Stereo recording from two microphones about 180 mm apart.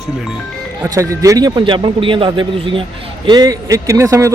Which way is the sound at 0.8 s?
15° right (ahead or behind).